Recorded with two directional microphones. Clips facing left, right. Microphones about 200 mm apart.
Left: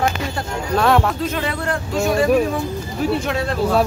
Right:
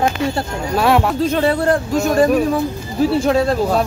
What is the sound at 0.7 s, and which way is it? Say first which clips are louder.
Speech: right 1 dB; 10° right (ahead or behind).